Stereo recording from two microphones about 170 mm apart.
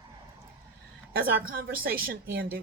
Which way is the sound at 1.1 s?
60° right (ahead or behind).